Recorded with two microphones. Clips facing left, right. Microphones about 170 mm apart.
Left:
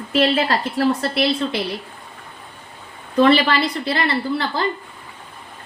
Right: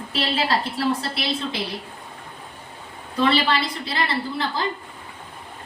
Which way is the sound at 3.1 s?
55° left (ahead or behind).